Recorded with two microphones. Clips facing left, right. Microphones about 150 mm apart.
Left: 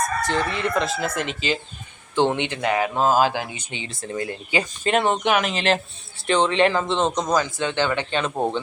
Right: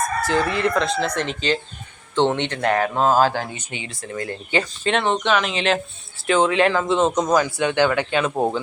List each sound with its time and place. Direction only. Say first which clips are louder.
0.0 s speech: right 2 dB; 5° right (ahead or behind); by 3.6 s 15° left (ahead or behind)
3.6 s speech: even; 25° left (ahead or behind)
4.5 s speech: even; 10° left (ahead or behind); by 8.6 s 5° right (ahead or behind)